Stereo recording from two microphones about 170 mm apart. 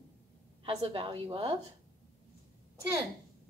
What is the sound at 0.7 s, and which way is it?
Speech, 30° right (ahead or behind).